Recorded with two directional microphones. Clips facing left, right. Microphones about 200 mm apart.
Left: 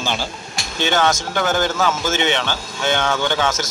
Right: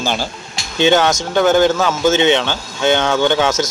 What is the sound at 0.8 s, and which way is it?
Speech, 20° right (ahead or behind).